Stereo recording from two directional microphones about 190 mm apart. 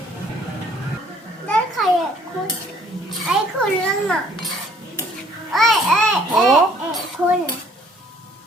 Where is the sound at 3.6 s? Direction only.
5° left (ahead or behind).